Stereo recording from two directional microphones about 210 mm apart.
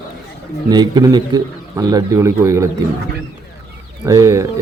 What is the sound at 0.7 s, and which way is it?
Speech, 20° right (ahead or behind).